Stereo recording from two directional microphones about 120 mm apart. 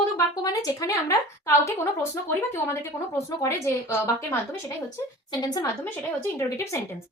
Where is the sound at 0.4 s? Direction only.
30° left (ahead or behind).